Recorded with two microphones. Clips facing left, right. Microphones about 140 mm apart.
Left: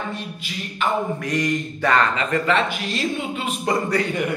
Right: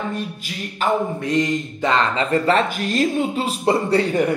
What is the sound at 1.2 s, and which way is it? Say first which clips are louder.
A woman's voice: right 3 dB; 25° right (ahead or behind).